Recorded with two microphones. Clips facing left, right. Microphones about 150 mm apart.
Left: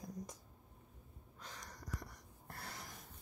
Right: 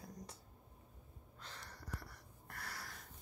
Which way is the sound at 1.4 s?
15° left (ahead or behind).